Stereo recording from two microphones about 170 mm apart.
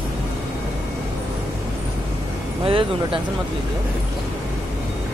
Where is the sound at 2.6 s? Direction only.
30° right (ahead or behind).